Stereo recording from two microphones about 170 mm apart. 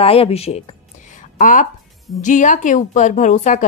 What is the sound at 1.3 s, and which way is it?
A woman's voice, 50° left (ahead or behind).